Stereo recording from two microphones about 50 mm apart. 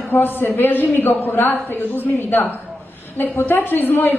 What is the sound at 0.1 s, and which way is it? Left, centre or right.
Speech, left.